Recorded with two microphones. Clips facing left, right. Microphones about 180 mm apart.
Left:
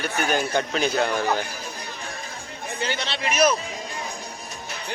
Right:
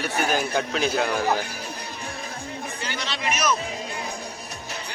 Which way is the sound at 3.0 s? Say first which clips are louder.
Left 5 dB; 30° left (ahead or behind).